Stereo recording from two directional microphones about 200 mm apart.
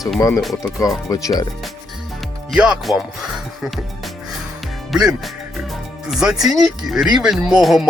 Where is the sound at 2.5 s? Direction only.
5° right (ahead or behind).